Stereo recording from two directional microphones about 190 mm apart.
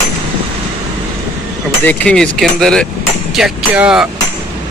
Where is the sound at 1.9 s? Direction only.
5° left (ahead or behind).